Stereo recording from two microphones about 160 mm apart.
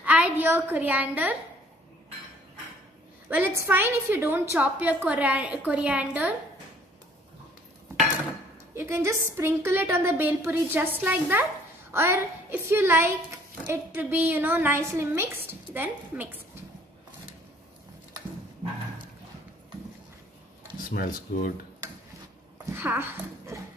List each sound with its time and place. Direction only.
0.0 s a woman's voice: 10° right (ahead or behind)
3.3 s a woman's voice: 15° right (ahead or behind)
7.9 s cutlery: 15° right (ahead or behind)
8.7 s a woman's voice: 15° right (ahead or behind)
20.9 s speech: 60° left (ahead or behind)
22.7 s speech: 15° right (ahead or behind)